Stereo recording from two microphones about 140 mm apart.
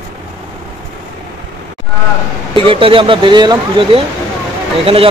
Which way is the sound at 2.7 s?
40° right (ahead or behind).